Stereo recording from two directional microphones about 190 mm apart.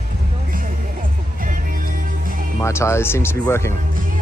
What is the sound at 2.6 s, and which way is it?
Speech, 15° left (ahead or behind).